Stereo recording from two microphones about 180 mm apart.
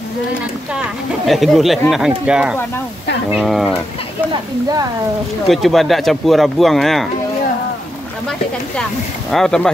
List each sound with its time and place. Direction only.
0.7 s speech: centre (ahead or behind)
4.3 s speech: 20° right (ahead or behind)
5.5 s speech: centre (ahead or behind)
9.3 s speech: 5° left (ahead or behind)